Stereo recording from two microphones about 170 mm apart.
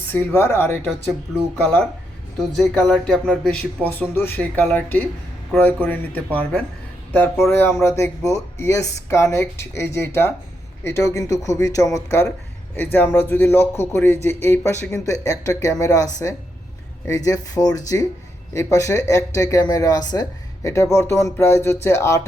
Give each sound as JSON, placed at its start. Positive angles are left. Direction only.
{"t": 0.1, "sound": "speech", "side_deg": 15}
{"t": 2.6, "sound": "speech", "side_deg": 5}
{"t": 17.1, "sound": "speech", "side_deg": 20}